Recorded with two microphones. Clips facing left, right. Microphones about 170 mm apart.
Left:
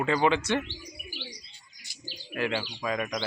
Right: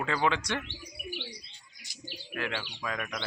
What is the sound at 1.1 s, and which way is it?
Bird, 60° right (ahead or behind).